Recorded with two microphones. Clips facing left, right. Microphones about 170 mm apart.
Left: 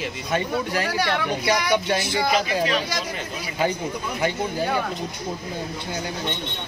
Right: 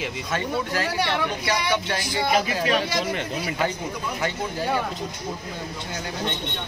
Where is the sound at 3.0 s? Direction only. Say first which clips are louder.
Right 4 dB; 60° right (ahead or behind).